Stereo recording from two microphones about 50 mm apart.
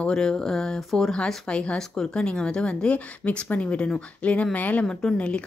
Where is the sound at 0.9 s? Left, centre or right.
Centre; by 4.8 s left.